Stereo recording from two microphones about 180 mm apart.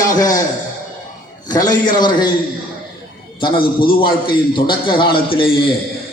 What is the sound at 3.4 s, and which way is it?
A man's voice, 25° left (ahead or behind).